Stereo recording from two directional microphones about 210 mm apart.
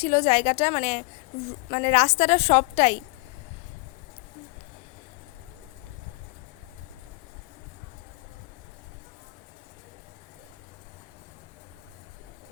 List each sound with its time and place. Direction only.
0.0 s a woman's voice: 30° left (ahead or behind)